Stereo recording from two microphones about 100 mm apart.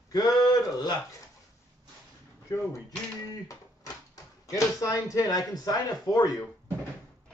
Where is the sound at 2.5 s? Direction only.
30° left (ahead or behind).